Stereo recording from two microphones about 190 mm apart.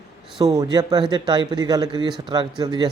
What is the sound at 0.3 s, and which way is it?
A man's voice, 20° right (ahead or behind).